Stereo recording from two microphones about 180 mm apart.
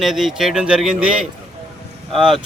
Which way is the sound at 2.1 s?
Centre (ahead or behind).